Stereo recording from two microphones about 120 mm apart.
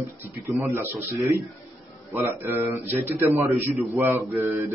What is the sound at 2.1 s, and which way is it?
A man's voice, 15° right (ahead or behind).